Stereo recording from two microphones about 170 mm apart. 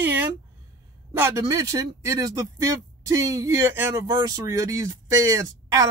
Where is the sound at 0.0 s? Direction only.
10° right (ahead or behind).